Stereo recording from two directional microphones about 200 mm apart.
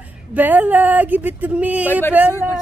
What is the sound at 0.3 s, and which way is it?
Speech, 10° right (ahead or behind).